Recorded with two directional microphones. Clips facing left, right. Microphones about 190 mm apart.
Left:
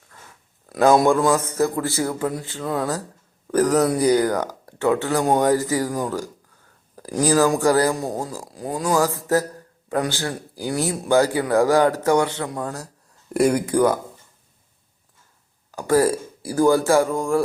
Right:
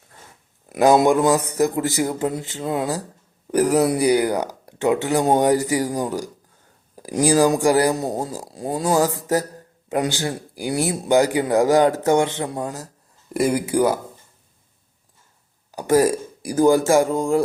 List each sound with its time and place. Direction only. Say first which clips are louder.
0.7 s speech: right 1 dB; 20° right (ahead or behind)
13.3 s speech: left 1 dB; 5° right (ahead or behind)
15.7 s speech: right 1 dB; 15° right (ahead or behind)